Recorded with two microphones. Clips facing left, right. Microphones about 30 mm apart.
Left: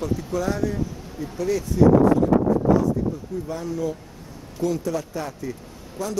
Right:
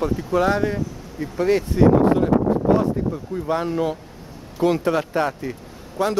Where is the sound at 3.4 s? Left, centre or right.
Right.